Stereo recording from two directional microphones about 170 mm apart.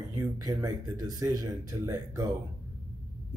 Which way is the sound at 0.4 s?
20° right (ahead or behind).